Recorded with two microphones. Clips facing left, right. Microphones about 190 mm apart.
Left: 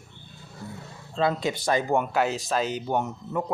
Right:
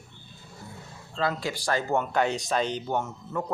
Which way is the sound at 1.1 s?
20° left (ahead or behind).